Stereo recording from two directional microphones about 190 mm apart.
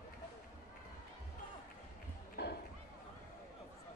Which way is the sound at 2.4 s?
60° left (ahead or behind).